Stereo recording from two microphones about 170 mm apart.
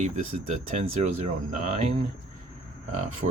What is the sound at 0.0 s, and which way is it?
Speech, 45° right (ahead or behind).